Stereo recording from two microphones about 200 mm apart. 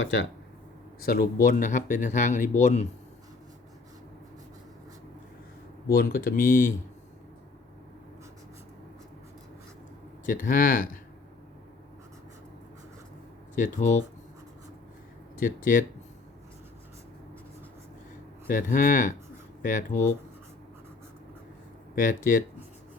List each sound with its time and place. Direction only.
0.0 s speech: 65° left (ahead or behind)
1.0 s speech: 50° left (ahead or behind)
5.9 s speech: 50° left (ahead or behind)
10.2 s speech: 45° left (ahead or behind)
13.6 s speech: 40° left (ahead or behind)
15.4 s speech: 45° left (ahead or behind)
18.4 s speech: 40° left (ahead or behind)
21.9 s speech: 45° left (ahead or behind)